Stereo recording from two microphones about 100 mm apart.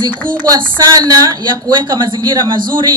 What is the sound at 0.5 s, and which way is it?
A woman's voice, 40° right (ahead or behind).